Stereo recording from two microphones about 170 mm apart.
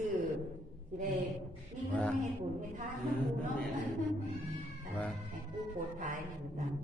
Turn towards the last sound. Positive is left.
turn(degrees=-50)  # may be behind; listen again after turning